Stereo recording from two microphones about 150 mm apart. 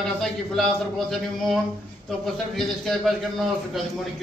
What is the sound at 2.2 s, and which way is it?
A man's voice, centre (ahead or behind).